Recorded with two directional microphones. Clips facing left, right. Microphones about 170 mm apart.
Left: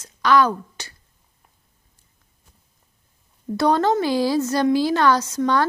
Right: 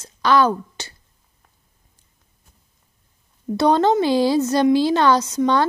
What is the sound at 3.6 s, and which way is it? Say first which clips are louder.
Speech: right 2 dB; 25° right (ahead or behind).